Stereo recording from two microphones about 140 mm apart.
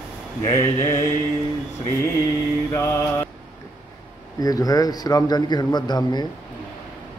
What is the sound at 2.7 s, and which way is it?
Speech, 20° left (ahead or behind).